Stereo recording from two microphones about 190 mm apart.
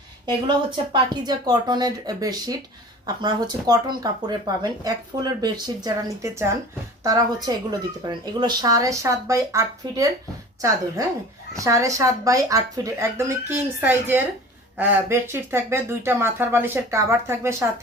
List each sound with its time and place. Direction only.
0.9 s speech: 20° right (ahead or behind)
11.5 s speech: 15° right (ahead or behind)